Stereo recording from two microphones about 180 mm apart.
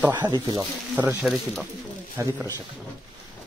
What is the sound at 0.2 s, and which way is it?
Speech, 20° right (ahead or behind).